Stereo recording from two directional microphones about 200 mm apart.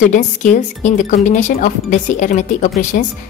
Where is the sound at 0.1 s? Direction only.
40° left (ahead or behind).